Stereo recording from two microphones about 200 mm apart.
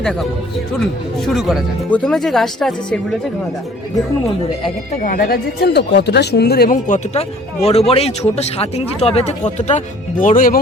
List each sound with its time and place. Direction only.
0.0 s speech: centre (ahead or behind)
5.0 s speech: 45° left (ahead or behind)